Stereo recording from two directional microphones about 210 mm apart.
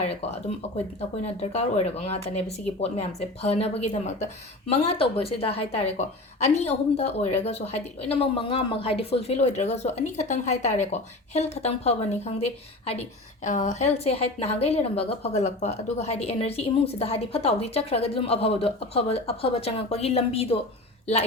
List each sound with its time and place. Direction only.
1.2 s a woman's voice: 30° left (ahead or behind)